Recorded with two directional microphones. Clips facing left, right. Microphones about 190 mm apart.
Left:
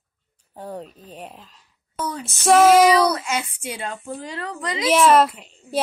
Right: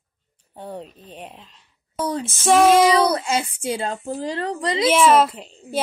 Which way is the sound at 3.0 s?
30° right (ahead or behind).